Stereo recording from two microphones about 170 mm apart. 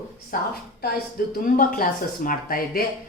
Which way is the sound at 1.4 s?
55° left (ahead or behind).